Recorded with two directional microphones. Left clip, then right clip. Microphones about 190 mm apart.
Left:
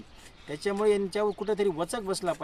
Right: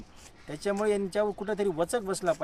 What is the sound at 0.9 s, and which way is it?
Speech, 30° right (ahead or behind).